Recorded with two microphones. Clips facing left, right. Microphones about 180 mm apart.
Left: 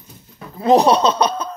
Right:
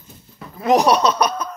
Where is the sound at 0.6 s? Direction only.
30° left (ahead or behind).